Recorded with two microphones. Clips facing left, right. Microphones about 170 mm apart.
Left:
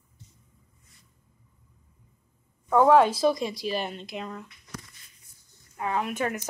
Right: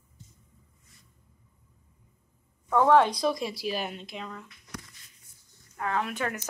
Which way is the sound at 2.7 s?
5° left (ahead or behind).